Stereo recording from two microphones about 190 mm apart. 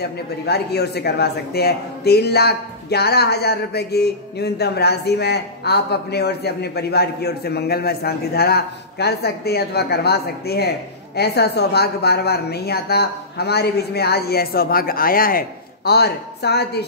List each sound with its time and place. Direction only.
0.0 s a man's voice: 60° left (ahead or behind)